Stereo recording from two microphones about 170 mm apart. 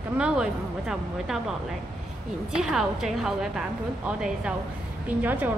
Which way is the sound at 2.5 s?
Centre (ahead or behind).